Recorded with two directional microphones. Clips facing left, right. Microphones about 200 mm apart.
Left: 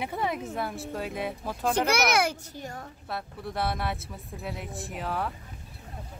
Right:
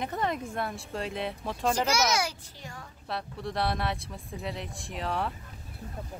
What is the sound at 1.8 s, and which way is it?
A child's voice, 60° left (ahead or behind).